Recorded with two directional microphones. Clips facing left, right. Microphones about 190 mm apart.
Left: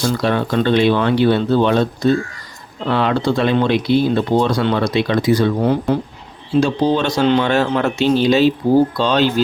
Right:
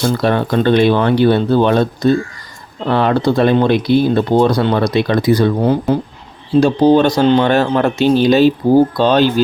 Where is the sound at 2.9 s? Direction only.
45° right (ahead or behind).